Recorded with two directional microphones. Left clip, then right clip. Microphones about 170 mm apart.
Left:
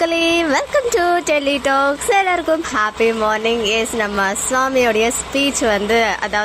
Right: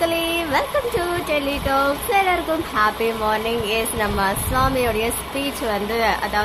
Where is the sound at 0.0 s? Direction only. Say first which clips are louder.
Left 5 dB; 40° left (ahead or behind).